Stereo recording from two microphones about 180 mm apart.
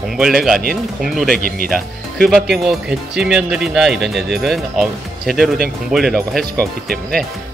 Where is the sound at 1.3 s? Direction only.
50° right (ahead or behind).